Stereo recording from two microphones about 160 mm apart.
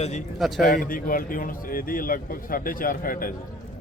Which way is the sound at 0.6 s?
60° left (ahead or behind).